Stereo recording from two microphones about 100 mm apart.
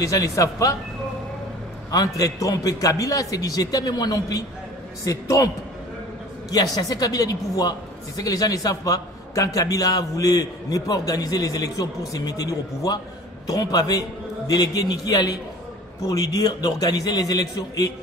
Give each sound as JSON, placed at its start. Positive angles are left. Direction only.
{"t": 0.0, "sound": "a man's voice", "side_deg": 35}
{"t": 1.9, "sound": "a man's voice", "side_deg": 35}
{"t": 6.5, "sound": "a man's voice", "side_deg": 40}